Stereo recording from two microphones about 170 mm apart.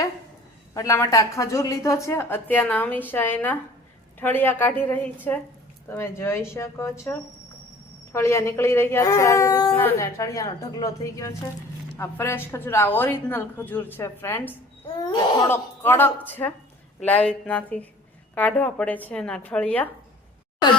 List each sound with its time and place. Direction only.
0.7 s a woman's voice: 20° left (ahead or behind)
14.9 s speech: 25° left (ahead or behind)
15.4 s a woman's voice: 15° left (ahead or behind)